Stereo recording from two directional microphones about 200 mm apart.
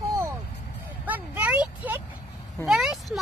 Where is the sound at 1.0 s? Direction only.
10° right (ahead or behind).